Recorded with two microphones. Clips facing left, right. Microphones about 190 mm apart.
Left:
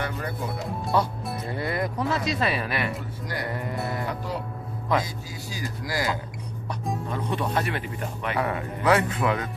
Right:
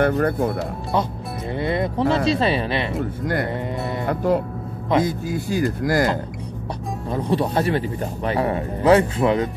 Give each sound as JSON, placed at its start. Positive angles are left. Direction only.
{"t": 0.0, "sound": "speech", "side_deg": -55}
{"t": 0.9, "sound": "speech", "side_deg": -20}
{"t": 3.0, "sound": "speech", "side_deg": -55}
{"t": 3.5, "sound": "speech", "side_deg": -20}
{"t": 4.1, "sound": "speech", "side_deg": -55}
{"t": 7.1, "sound": "speech", "side_deg": -35}